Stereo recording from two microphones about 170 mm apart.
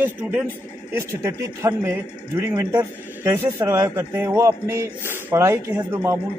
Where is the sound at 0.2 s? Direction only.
10° right (ahead or behind).